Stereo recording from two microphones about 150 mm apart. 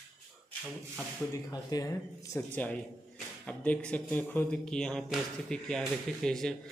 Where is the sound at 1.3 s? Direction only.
25° left (ahead or behind).